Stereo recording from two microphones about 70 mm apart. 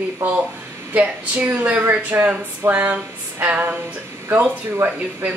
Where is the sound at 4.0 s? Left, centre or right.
Right.